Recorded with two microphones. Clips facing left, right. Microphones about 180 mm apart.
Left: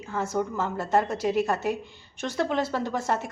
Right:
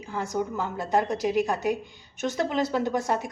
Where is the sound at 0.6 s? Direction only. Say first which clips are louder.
Left 1 dB; centre (ahead or behind).